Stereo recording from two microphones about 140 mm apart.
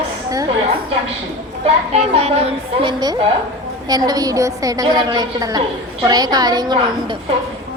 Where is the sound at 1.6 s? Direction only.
50° right (ahead or behind).